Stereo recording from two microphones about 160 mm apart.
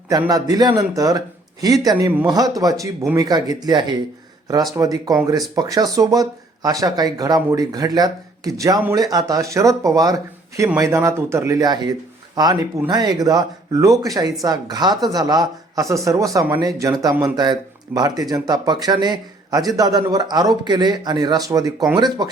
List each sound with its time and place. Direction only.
0.1 s speech: 25° right (ahead or behind)